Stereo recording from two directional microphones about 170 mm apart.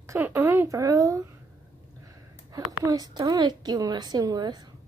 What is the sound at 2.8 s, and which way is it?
A woman's voice, 20° right (ahead or behind).